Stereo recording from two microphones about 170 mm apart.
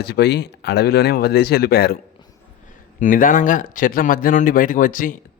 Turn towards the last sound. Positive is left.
turn(degrees=55)  # may be behind; listen again after turning